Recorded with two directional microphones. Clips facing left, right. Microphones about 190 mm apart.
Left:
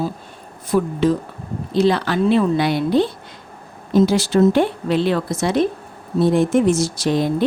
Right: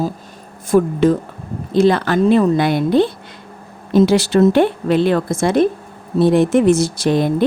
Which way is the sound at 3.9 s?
70° right (ahead or behind).